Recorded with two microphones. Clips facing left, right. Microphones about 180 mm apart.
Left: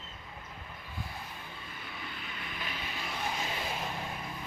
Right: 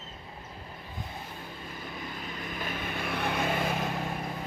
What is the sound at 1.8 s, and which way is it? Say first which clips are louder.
Vehicle: right 6 dB; 40° right (ahead or behind).